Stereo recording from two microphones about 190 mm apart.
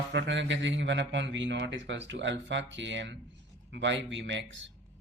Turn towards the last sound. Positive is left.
turn(degrees=-80)